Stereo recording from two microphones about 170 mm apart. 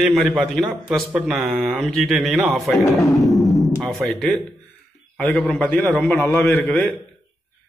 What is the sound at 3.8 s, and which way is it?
A man's voice, centre (ahead or behind).